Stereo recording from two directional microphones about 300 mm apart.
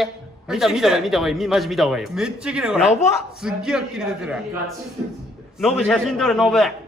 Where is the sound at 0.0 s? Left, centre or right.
Centre.